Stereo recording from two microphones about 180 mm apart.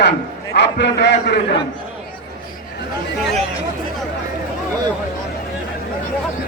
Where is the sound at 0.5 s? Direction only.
70° left (ahead or behind).